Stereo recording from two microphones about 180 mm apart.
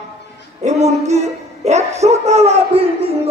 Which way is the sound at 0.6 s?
40° right (ahead or behind).